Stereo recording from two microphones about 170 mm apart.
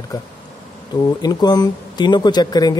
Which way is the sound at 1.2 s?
25° left (ahead or behind).